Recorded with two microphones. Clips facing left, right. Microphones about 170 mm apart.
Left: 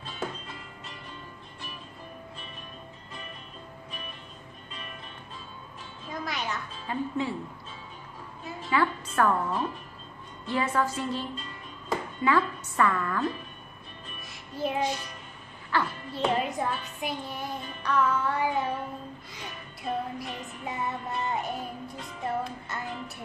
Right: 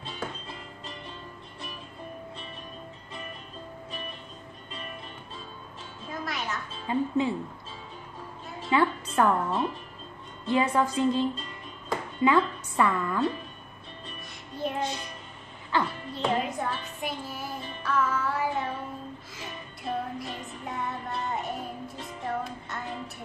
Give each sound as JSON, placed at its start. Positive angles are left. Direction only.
{"t": 6.0, "sound": "music", "side_deg": 0}
{"t": 6.9, "sound": "a woman's voice", "side_deg": -20}
{"t": 8.6, "sound": "a woman's voice", "side_deg": -20}
{"t": 14.5, "sound": "music", "side_deg": 0}
{"t": 15.8, "sound": "a child's voice", "side_deg": 0}
{"t": 19.3, "sound": "music", "side_deg": 0}